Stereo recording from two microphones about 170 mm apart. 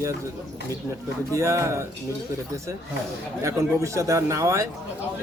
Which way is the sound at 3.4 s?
20° right (ahead or behind).